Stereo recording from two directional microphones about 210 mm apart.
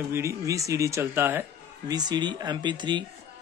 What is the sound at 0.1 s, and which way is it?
Speech, 15° right (ahead or behind).